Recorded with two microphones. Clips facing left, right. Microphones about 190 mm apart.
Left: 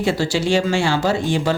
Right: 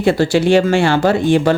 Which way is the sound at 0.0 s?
55° right (ahead or behind).